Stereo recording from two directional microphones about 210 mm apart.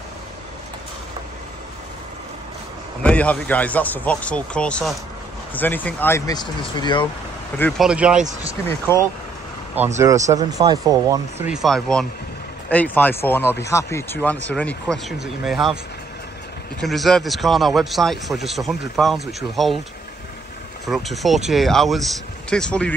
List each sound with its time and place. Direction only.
3.0 s a man's voice: 5° left (ahead or behind); by 7.1 s 20° left (ahead or behind)
7.5 s a man's voice: 10° left (ahead or behind)
7.8 s a man's voice: 5° right (ahead or behind)
8.6 s a man's voice: 10° left (ahead or behind)
9.9 s speech: 15° right (ahead or behind)
11.5 s a man's voice: centre (ahead or behind)
16.8 s a man's voice: centre (ahead or behind)
20.8 s a man's voice: centre (ahead or behind)